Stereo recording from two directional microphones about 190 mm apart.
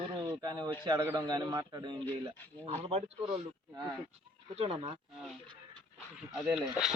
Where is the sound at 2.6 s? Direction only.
35° right (ahead or behind).